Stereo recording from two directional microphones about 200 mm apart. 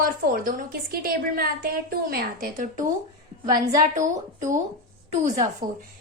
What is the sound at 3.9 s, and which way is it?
Speech, 40° right (ahead or behind).